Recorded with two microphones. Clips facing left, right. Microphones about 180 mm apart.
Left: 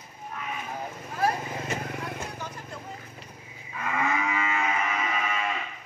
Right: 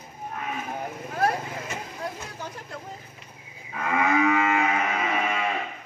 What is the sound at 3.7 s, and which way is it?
Livestock, 65° right (ahead or behind).